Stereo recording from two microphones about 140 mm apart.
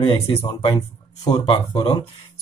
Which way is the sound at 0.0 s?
35° left (ahead or behind).